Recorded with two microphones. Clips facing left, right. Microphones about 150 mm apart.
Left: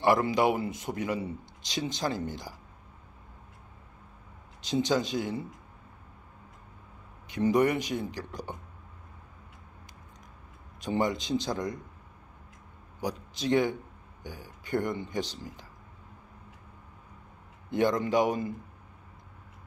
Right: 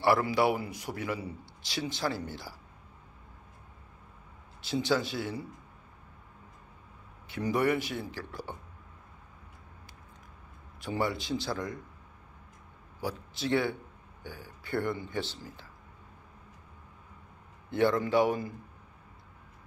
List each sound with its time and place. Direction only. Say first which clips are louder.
0.0 s speech: left 1 dB; 20° left (ahead or behind)
4.6 s speech: left 2 dB; 20° left (ahead or behind)
7.2 s speech: left 3 dB; 20° left (ahead or behind)
10.8 s speech: left 3 dB; 20° left (ahead or behind)
13.0 s speech: left 2 dB; 15° left (ahead or behind)
17.6 s speech: even; 15° left (ahead or behind)